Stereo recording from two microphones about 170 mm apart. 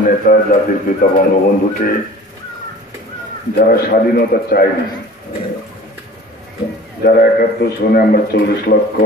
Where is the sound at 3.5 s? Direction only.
60° left (ahead or behind).